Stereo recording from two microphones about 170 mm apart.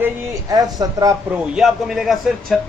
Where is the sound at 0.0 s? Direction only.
20° right (ahead or behind).